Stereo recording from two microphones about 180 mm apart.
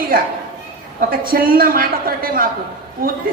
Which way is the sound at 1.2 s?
55° right (ahead or behind).